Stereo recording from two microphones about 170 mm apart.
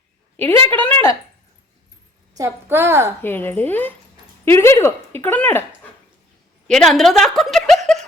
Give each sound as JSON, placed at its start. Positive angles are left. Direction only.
{"t": 0.7, "sound": "speech", "side_deg": 10}
{"t": 2.3, "sound": "a woman's voice", "side_deg": -15}
{"t": 3.2, "sound": "speech", "side_deg": 10}
{"t": 6.7, "sound": "a woman's voice", "side_deg": 5}